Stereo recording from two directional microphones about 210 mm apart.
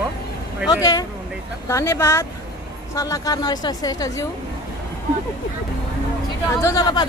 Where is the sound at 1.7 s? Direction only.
15° left (ahead or behind).